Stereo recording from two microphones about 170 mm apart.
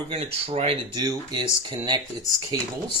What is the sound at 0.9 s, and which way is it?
Speech, 20° right (ahead or behind).